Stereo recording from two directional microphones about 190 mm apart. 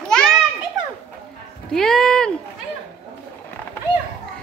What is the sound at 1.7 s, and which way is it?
Speech, centre (ahead or behind).